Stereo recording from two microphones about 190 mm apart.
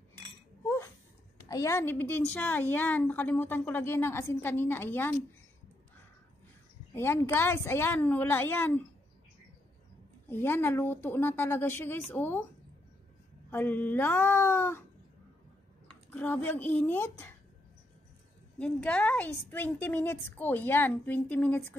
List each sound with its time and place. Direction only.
1.5 s a woman's voice: 15° left (ahead or behind)
7.0 s a woman's voice: 15° left (ahead or behind)
10.3 s a woman's voice: 10° left (ahead or behind)
13.5 s a woman's voice: 10° left (ahead or behind)
16.1 s a woman's voice: 10° left (ahead or behind)
18.6 s a woman's voice: 5° left (ahead or behind)